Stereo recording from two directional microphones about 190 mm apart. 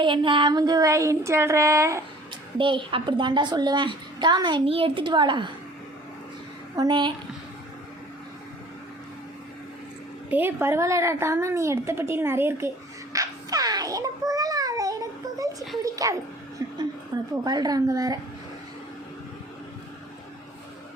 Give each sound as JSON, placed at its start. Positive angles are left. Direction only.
{"t": 0.0, "sound": "a woman's voice", "side_deg": -25}
{"t": 2.6, "sound": "a woman's voice", "side_deg": -25}
{"t": 6.7, "sound": "a woman's voice", "side_deg": -25}
{"t": 10.2, "sound": "a woman's voice", "side_deg": -10}
{"t": 13.1, "sound": "music", "side_deg": -20}
{"t": 15.8, "sound": "dog", "side_deg": -20}
{"t": 16.6, "sound": "a sound", "side_deg": -15}
{"t": 17.4, "sound": "a woman's voice", "side_deg": -20}